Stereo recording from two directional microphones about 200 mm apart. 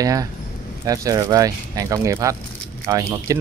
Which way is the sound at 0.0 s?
15° right (ahead or behind).